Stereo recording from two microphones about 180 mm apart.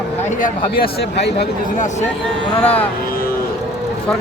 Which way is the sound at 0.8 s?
65° left (ahead or behind).